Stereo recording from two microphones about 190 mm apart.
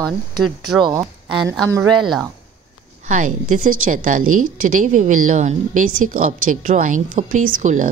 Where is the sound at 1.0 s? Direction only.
15° right (ahead or behind).